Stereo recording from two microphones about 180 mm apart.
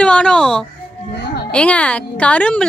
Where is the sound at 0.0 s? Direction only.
5° left (ahead or behind).